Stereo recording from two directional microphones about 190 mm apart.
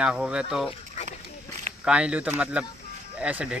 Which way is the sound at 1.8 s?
5° right (ahead or behind).